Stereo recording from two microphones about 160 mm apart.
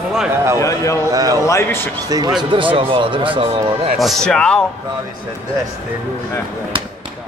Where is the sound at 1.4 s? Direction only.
15° left (ahead or behind).